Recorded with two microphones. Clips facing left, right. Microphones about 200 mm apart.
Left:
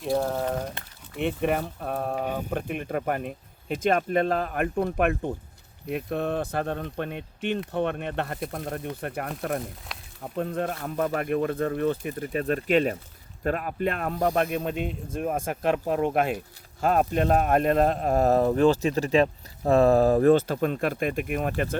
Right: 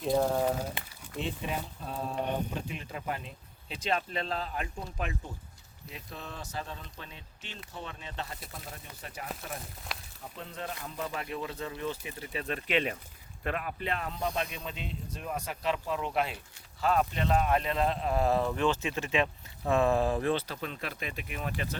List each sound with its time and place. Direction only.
0.3 s speech: 10° right (ahead or behind)
1.2 s speech: 60° left (ahead or behind)
9.9 s a sound: centre (ahead or behind)
10.2 s speech: 55° left (ahead or behind)